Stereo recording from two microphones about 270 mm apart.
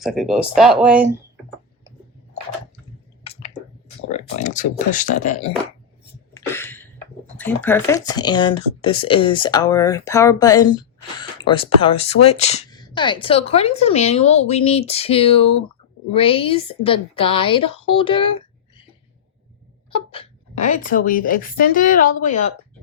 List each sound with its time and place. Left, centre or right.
0.0 s speech: centre
4.1 s speech: left
6.3 s a sound: centre
7.3 s speech: centre
19.9 s speech: centre